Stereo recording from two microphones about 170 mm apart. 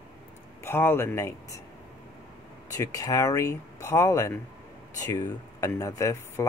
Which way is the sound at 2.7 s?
15° left (ahead or behind).